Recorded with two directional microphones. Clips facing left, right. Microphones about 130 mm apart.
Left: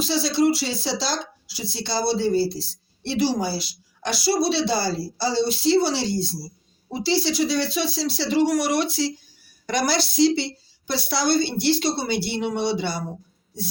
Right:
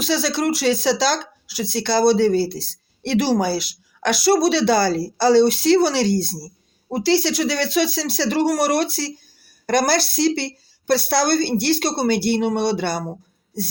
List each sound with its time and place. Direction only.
0.0 s a woman's voice: 70° right (ahead or behind)